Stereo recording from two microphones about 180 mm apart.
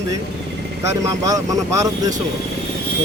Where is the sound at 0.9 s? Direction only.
20° right (ahead or behind).